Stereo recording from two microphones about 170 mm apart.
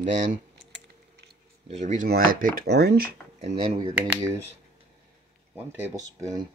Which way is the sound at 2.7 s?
75° right (ahead or behind).